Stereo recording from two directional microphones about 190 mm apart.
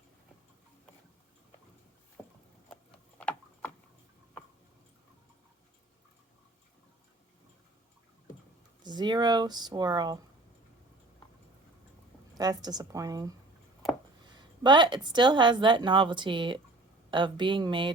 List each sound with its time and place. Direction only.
2.2 s rowboat: centre (ahead or behind)
3.2 s a sound: 5° left (ahead or behind)
8.8 s speech: 25° right (ahead or behind)
12.3 s speech: 20° right (ahead or behind)
14.3 s speech: 25° right (ahead or behind)